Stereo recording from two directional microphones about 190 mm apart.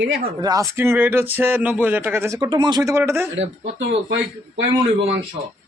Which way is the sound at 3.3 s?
80° right.